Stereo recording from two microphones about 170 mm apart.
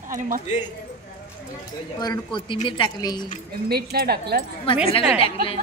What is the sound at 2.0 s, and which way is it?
A woman's voice, 25° left (ahead or behind).